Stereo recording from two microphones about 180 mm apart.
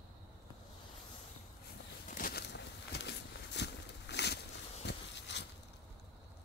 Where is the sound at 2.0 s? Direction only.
50° left (ahead or behind); by 5.5 s 70° left (ahead or behind).